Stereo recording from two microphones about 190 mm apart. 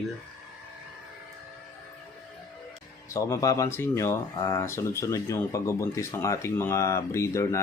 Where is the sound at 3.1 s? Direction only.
15° left (ahead or behind).